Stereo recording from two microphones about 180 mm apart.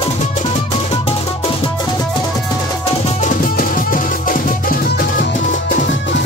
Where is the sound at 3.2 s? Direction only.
50° left (ahead or behind).